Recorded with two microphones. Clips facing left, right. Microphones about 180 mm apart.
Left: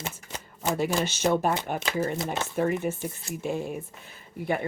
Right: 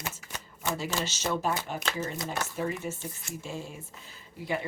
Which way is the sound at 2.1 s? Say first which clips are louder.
Left 4 dB; 20° left (ahead or behind).